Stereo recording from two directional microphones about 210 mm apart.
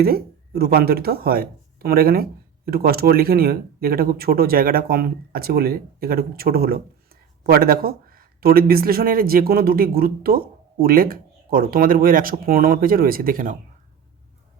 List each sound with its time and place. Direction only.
0.0 s speech: 45° right (ahead or behind)